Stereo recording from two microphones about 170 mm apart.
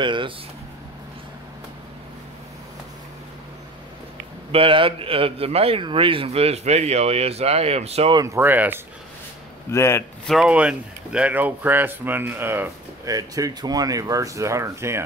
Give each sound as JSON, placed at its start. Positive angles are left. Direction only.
{"t": 0.0, "sound": "speech", "side_deg": -30}
{"t": 4.5, "sound": "a man's voice", "side_deg": -30}
{"t": 8.2, "sound": "speech", "side_deg": -15}
{"t": 9.7, "sound": "speech", "side_deg": 15}
{"t": 10.2, "sound": "speech", "side_deg": 0}